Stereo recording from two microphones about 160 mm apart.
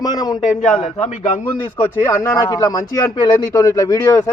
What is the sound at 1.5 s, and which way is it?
A man's voice, 15° left (ahead or behind).